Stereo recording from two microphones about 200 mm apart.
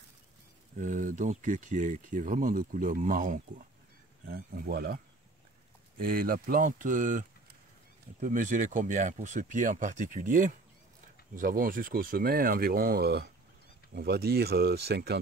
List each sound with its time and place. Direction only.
0.7 s speech: 40° right (ahead or behind)